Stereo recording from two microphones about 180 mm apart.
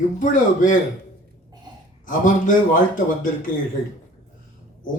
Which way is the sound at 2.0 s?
45° left (ahead or behind).